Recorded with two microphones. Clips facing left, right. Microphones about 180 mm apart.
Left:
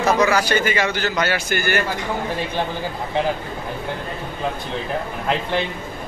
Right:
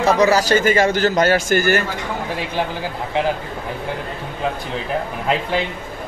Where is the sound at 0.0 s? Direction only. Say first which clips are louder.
Right 3 dB; 35° right (ahead or behind).